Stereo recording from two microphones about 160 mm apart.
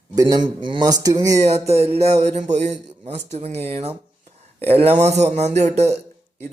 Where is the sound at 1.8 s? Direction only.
40° right (ahead or behind).